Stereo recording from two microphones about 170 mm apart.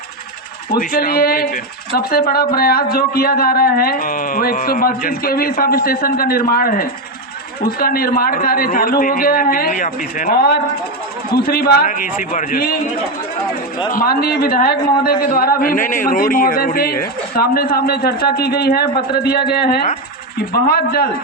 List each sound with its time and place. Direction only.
0.7 s speech: 60° left (ahead or behind)
13.9 s speech: 60° left (ahead or behind)